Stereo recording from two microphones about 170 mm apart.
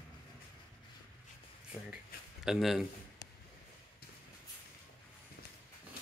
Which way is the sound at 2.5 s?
Centre (ahead or behind).